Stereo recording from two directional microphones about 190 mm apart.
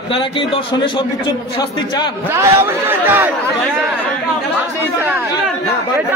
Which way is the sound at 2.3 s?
15° right (ahead or behind).